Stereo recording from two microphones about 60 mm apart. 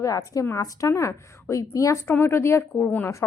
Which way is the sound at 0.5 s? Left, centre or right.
Left.